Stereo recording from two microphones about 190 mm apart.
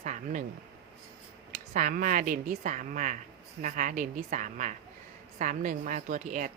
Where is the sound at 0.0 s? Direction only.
40° right (ahead or behind).